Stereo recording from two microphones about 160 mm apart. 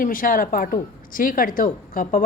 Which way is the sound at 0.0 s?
60° left (ahead or behind).